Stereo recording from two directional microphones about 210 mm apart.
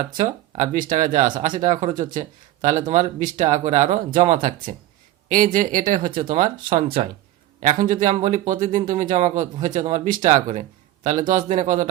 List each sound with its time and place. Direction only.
0.0 s speech: 35° right (ahead or behind)